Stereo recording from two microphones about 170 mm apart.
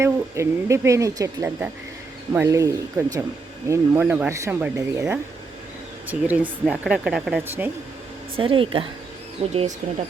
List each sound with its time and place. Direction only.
0.0 s speech: 15° right (ahead or behind)
8.4 s speech: 30° right (ahead or behind)